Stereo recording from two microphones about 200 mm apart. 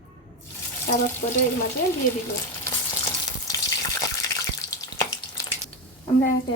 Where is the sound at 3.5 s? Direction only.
15° left (ahead or behind).